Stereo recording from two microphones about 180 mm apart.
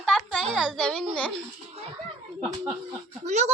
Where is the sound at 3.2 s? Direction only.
40° right (ahead or behind).